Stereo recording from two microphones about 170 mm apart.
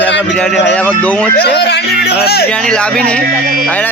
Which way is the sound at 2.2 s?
65° left (ahead or behind).